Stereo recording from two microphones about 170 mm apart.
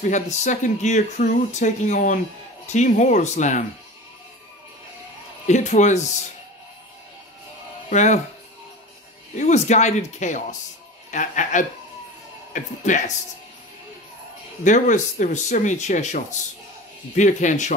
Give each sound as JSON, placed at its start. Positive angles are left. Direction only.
{"t": 0.0, "sound": "speech", "side_deg": 45}
{"t": 5.5, "sound": "speech", "side_deg": 45}
{"t": 7.9, "sound": "speech", "side_deg": 45}
{"t": 9.3, "sound": "speech", "side_deg": 45}
{"t": 14.6, "sound": "speech", "side_deg": 45}